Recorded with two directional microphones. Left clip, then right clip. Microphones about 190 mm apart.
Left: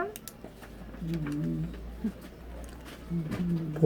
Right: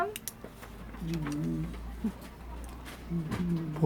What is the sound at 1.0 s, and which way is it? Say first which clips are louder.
Speech: left 1 dB; 10° right (ahead or behind).